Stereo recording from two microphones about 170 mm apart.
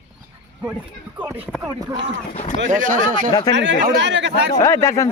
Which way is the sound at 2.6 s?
50° right (ahead or behind).